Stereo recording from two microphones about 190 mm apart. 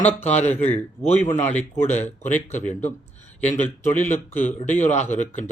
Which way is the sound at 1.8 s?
35° left (ahead or behind).